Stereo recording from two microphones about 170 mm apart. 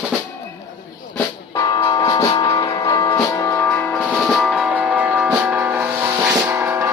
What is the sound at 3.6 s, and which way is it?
Music, 10° left (ahead or behind).